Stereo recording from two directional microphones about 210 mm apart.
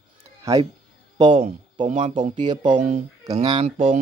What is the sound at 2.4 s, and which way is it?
Speech, 20° right (ahead or behind).